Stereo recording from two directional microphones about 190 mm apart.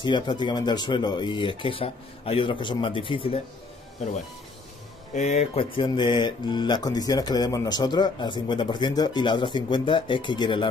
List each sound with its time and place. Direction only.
0.0 s speech: 25° left (ahead or behind)
5.1 s speech: 35° left (ahead or behind)